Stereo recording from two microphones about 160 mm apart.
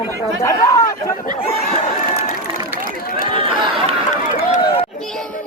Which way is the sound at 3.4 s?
35° right (ahead or behind).